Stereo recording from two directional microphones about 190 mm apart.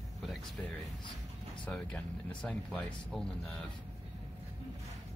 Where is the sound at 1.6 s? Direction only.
5° left (ahead or behind).